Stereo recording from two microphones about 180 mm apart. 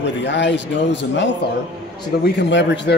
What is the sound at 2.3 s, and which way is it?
Speech, 75° left (ahead or behind).